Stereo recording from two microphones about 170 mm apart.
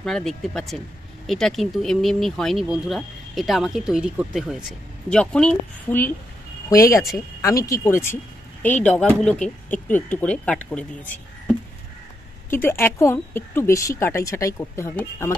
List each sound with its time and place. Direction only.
0.0 s speech: 5° left (ahead or behind)